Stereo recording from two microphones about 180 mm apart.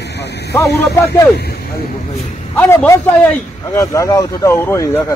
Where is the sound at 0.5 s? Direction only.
15° left (ahead or behind).